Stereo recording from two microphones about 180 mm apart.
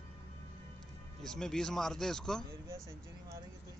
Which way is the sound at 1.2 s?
5° left (ahead or behind).